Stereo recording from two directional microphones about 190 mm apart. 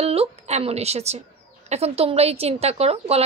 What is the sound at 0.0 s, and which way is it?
A woman's voice, 30° right (ahead or behind).